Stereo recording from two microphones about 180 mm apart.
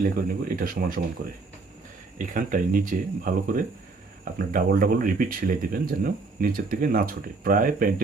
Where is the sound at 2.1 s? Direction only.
45° right (ahead or behind).